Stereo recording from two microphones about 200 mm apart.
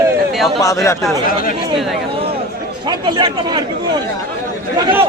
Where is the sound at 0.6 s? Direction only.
15° left (ahead or behind).